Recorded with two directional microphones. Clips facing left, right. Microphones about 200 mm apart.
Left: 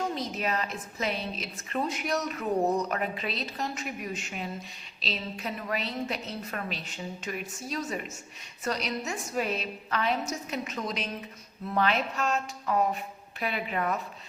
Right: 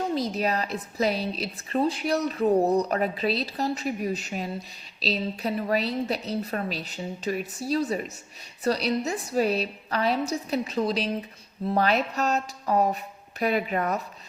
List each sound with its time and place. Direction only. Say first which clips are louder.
0.1 s a woman's voice: right 5 dB; 35° right (ahead or behind)